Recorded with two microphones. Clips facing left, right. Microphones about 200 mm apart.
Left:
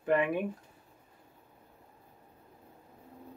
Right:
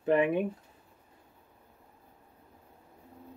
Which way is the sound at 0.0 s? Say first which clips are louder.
Right 3 dB; 25° right (ahead or behind).